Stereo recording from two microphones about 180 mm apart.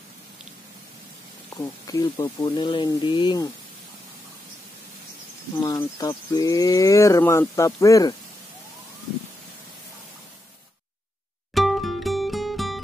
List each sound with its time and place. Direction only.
1.6 s speech: 20° left (ahead or behind)
5.9 s speech: 20° left (ahead or behind)
11.5 s music: centre (ahead or behind)